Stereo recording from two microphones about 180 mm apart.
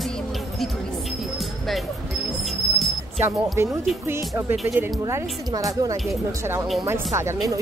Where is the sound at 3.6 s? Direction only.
15° right (ahead or behind).